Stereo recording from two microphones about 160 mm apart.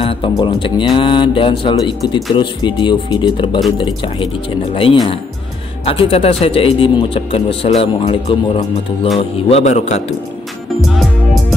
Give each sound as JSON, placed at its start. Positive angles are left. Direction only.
{"t": 0.0, "sound": "music", "side_deg": 35}
{"t": 0.4, "sound": "a man's voice", "side_deg": 30}
{"t": 10.8, "sound": "music", "side_deg": 0}